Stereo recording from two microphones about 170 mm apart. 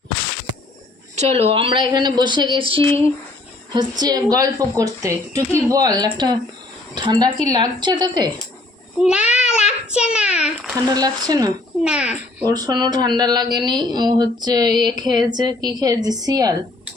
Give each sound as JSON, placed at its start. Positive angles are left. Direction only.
{"t": 1.1, "sound": "speech", "side_deg": -40}
{"t": 9.3, "sound": "a sound", "side_deg": -5}
{"t": 9.6, "sound": "a child's voice", "side_deg": -5}
{"t": 10.8, "sound": "speech", "side_deg": -20}
{"t": 11.8, "sound": "speech", "side_deg": -5}
{"t": 12.5, "sound": "speech", "side_deg": -20}